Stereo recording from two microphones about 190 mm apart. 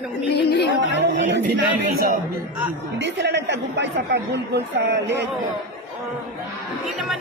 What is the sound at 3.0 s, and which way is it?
A woman's voice, 65° right (ahead or behind).